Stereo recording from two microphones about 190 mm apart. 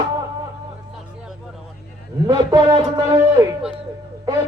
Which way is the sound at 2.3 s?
25° right (ahead or behind).